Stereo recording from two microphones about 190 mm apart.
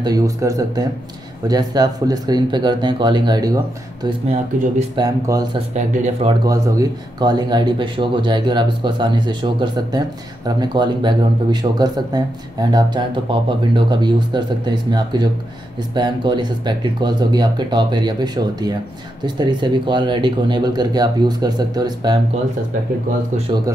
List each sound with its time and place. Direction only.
0.0 s speech: 20° right (ahead or behind)
4.3 s speech: 35° right (ahead or behind)
5.0 s speech: 20° right (ahead or behind)